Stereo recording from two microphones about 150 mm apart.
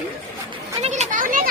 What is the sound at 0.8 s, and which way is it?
Children playing, 50° right (ahead or behind).